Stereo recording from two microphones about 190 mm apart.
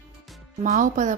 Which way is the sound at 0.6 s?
40° right (ahead or behind).